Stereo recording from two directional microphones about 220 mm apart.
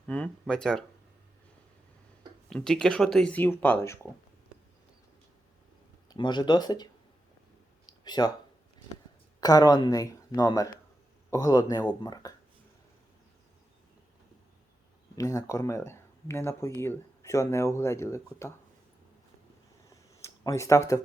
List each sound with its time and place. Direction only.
0.1 s speech: 5° left (ahead or behind)
2.5 s speech: 5° left (ahead or behind)
6.1 s speech: 20° left (ahead or behind)
7.9 s a sound: 20° left (ahead or behind)
9.4 s speech: 15° left (ahead or behind)
15.1 s speech: 15° left (ahead or behind)
20.1 s speech: 15° left (ahead or behind)